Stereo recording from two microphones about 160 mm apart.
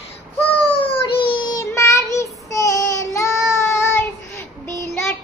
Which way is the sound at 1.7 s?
20° left (ahead or behind).